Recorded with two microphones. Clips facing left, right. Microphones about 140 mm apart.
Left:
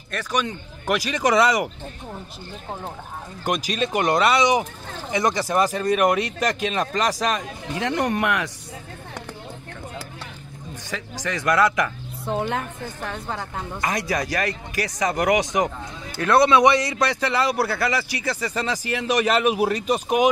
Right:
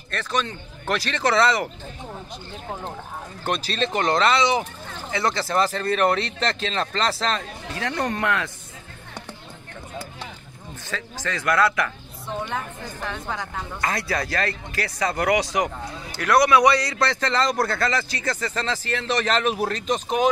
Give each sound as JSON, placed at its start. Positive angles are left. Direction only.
{"t": 0.1, "sound": "speech", "side_deg": 10}
{"t": 3.4, "sound": "speech", "side_deg": 10}
{"t": 10.9, "sound": "speech", "side_deg": 15}
{"t": 12.3, "sound": "a woman's voice", "side_deg": 55}
{"t": 13.7, "sound": "speech", "side_deg": 15}